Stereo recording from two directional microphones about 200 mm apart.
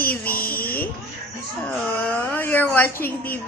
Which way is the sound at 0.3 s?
45° left (ahead or behind).